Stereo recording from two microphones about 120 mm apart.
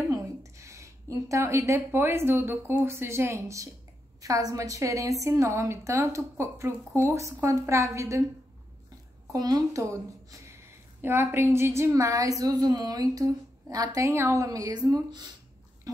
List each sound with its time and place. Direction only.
0.1 s a woman's voice: 25° right (ahead or behind)
9.3 s a woman's voice: 30° right (ahead or behind)